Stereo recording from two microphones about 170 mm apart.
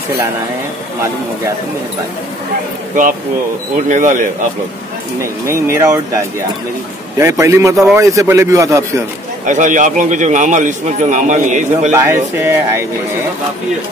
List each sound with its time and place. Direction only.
3.9 s a man's voice: 50° right (ahead or behind)
5.5 s speech: 15° right (ahead or behind)
9.5 s a man's voice: 45° right (ahead or behind)
11.9 s speech: 15° right (ahead or behind)